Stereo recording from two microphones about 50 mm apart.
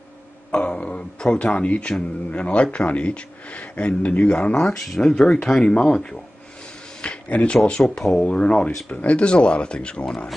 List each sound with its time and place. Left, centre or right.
0.5 s speech: left
4.8 s speech: centre
7.0 s a sound: left
8.0 s speech: centre